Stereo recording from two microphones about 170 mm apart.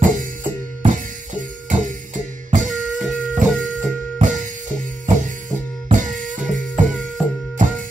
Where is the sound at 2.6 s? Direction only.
Centre (ahead or behind).